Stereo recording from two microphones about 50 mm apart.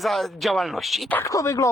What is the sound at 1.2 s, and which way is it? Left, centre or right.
Speech, left.